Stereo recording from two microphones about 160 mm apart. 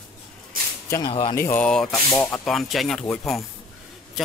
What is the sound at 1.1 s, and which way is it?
Speech, 30° left (ahead or behind).